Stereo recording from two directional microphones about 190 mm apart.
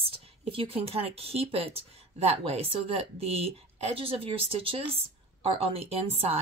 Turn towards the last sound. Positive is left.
turn(degrees=-30)  # may be behind; listen again after turning